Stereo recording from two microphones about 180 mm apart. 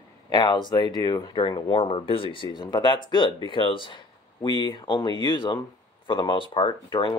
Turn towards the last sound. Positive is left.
turn(degrees=25)  # may be behind; listen again after turning